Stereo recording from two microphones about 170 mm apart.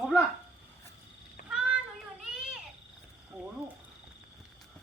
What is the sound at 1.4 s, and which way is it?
Cat, 50° left (ahead or behind).